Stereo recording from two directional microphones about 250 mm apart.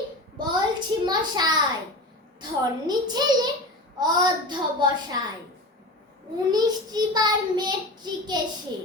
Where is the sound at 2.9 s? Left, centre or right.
Centre.